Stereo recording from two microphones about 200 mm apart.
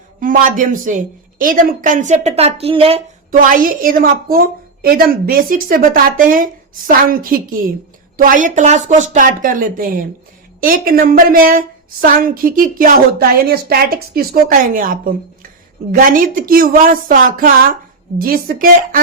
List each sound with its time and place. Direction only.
0.2 s a woman's voice: 40° right (ahead or behind)
3.3 s a woman's voice: 45° right (ahead or behind)